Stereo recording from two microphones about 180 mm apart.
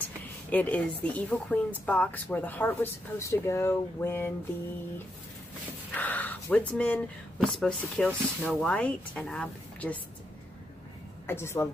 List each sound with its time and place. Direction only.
0.5 s speech: 10° left (ahead or behind)
5.9 s speech: 10° left (ahead or behind)
11.2 s speech: 15° left (ahead or behind)